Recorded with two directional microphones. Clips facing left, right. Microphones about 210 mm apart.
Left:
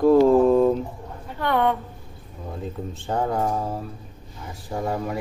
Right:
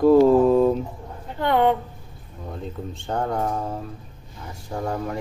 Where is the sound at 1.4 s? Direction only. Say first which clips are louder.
Right 2 dB; 20° right (ahead or behind).